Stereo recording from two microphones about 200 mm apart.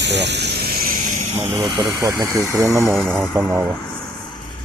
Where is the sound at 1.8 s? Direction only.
10° right (ahead or behind).